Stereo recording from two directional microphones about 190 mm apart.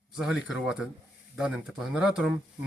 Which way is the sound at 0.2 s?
5° right (ahead or behind).